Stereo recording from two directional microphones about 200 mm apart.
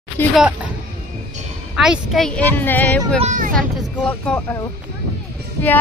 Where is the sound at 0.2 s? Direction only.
10° left (ahead or behind).